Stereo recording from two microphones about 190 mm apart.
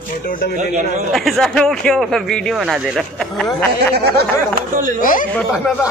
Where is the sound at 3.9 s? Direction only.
55° right (ahead or behind).